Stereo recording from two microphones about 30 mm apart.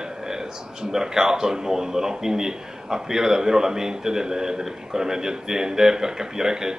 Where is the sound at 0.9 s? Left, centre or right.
Centre.